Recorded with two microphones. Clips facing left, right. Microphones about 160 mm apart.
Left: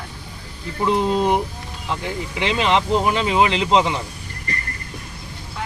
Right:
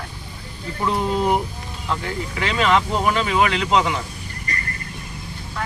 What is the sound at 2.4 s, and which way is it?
Speech, 25° left (ahead or behind).